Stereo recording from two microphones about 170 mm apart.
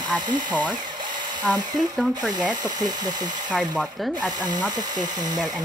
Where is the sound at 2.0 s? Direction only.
Centre (ahead or behind).